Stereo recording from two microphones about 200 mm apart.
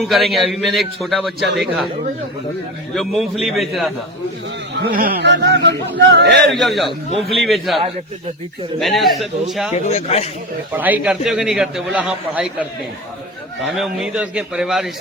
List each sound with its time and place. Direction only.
0.1 s a man's voice: centre (ahead or behind)
2.9 s a man's voice: centre (ahead or behind)
4.7 s speech: 50° right (ahead or behind)
6.5 s a man's voice: centre (ahead or behind)
8.8 s a man's voice: centre (ahead or behind)
9.7 s a man's voice: 35° left (ahead or behind)
10.7 s a man's voice: 10° right (ahead or behind)